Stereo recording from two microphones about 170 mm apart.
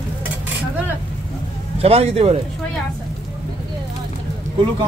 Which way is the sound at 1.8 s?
35° right (ahead or behind).